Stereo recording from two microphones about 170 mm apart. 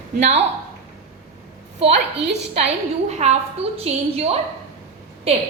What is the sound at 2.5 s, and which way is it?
A woman's voice, 40° right (ahead or behind).